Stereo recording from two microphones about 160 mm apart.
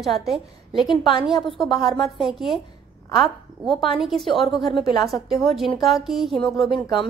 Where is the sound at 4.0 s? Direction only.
Centre (ahead or behind).